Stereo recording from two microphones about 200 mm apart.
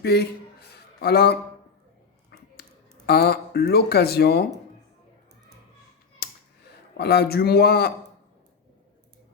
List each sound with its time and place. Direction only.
0.0 s speech: 55° left (ahead or behind)
3.1 s speech: 55° left (ahead or behind)
6.2 s finger snapping: 50° left (ahead or behind)
6.9 s speech: 55° left (ahead or behind)